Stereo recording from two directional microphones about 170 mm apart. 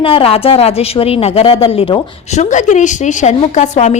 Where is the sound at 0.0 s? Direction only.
30° left (ahead or behind).